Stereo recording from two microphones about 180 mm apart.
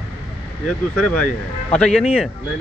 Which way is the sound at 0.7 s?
5° left (ahead or behind).